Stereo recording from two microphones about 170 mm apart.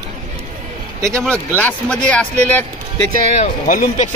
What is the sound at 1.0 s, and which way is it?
Speech, 15° right (ahead or behind).